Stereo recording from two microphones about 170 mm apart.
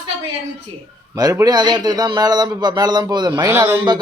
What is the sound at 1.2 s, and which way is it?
A man's voice, 20° right (ahead or behind).